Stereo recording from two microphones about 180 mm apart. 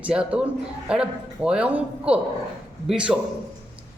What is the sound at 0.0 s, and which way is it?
Speech, 5° right (ahead or behind).